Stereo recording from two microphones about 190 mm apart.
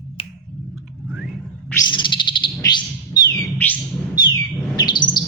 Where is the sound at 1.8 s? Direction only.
25° left (ahead or behind).